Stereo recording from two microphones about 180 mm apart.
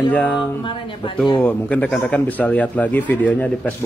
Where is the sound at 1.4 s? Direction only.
5° left (ahead or behind).